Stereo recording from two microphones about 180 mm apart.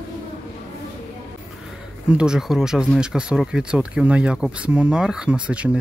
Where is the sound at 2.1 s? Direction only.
5° right (ahead or behind).